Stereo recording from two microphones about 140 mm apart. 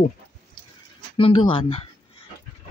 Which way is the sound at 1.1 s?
40° left (ahead or behind).